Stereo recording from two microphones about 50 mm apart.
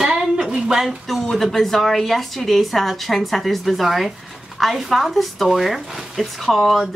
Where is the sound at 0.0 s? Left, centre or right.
Centre.